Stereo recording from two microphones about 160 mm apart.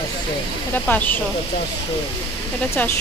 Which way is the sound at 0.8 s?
10° left (ahead or behind).